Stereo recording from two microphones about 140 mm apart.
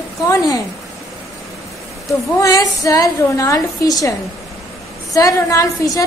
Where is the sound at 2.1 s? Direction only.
25° left (ahead or behind).